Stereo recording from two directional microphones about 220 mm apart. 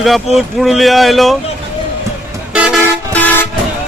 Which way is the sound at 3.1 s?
10° left (ahead or behind).